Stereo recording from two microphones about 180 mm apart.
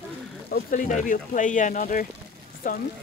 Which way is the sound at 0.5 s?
45° left (ahead or behind).